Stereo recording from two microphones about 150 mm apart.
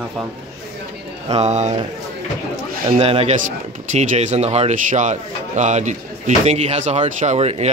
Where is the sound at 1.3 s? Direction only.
45° right (ahead or behind).